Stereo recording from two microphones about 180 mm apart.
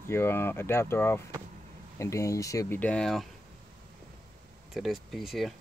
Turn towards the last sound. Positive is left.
turn(degrees=0)  # may be behind; listen again after turning